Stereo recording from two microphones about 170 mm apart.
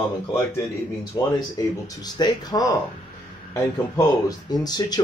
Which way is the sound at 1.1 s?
20° left (ahead or behind).